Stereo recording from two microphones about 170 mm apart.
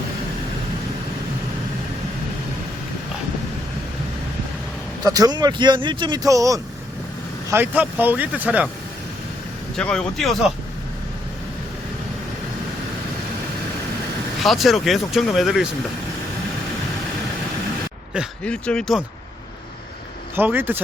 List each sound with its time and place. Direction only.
5.0 s speech: 20° right (ahead or behind)
9.7 s speech: 5° left (ahead or behind)
14.4 s speech: centre (ahead or behind)
18.4 s speech: 5° left (ahead or behind)
20.3 s speech: 10° right (ahead or behind)